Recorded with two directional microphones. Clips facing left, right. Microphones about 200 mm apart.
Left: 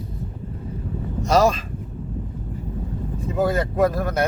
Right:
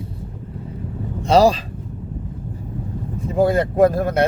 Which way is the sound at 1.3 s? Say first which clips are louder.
Right 4 dB; 30° right (ahead or behind).